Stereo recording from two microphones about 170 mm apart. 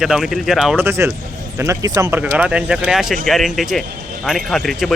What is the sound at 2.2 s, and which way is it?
A man's voice, 5° right (ahead or behind).